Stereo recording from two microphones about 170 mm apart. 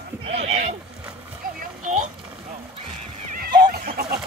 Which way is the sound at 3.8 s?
60° right (ahead or behind).